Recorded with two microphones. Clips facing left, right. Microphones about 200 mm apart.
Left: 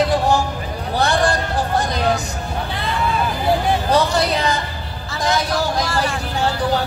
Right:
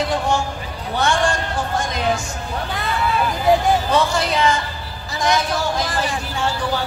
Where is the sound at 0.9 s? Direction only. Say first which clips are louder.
Left 1 dB; 35° left (ahead or behind).